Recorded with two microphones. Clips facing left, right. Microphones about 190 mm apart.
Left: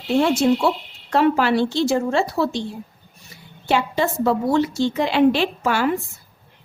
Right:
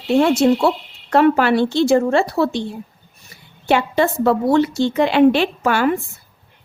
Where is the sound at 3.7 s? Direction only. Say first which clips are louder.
Right 4 dB; 60° right (ahead or behind).